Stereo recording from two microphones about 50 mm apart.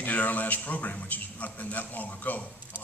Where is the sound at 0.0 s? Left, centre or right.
Left.